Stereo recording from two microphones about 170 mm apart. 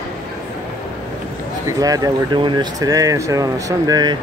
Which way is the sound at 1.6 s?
20° right (ahead or behind).